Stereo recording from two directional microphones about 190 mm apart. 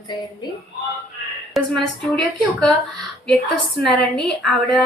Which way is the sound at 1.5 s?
Centre (ahead or behind).